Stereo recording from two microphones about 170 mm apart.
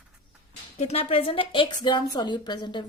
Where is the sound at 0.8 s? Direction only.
40° left (ahead or behind).